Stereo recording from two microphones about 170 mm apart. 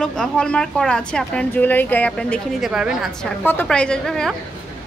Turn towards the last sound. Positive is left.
turn(degrees=0)  # may be behind; listen again after turning